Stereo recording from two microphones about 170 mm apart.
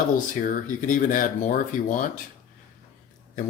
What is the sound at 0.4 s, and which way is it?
Speech, 50° left (ahead or behind).